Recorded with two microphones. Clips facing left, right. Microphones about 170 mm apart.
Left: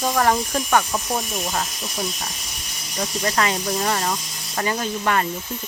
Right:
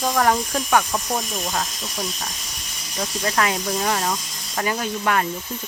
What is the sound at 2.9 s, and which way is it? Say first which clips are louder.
Speech: even; centre (ahead or behind).